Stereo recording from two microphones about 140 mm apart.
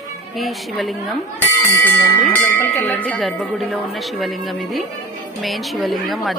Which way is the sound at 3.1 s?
Centre (ahead or behind).